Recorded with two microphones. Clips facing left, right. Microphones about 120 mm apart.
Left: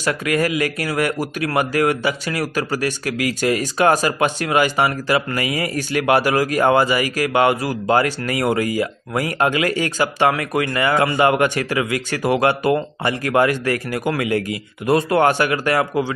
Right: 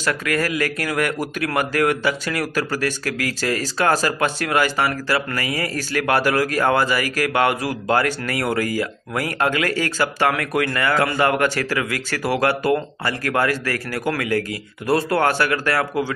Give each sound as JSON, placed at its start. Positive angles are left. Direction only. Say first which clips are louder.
{"t": 0.0, "sound": "speech", "louder": "left 2 dB", "side_deg": 10}